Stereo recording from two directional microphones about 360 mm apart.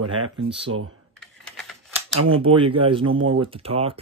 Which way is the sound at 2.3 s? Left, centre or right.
Centre.